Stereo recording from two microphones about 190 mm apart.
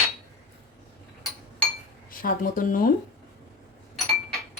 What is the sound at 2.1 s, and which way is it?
Speech, 45° left (ahead or behind).